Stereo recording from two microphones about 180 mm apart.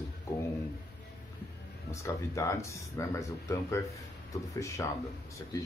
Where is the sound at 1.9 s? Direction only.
15° left (ahead or behind).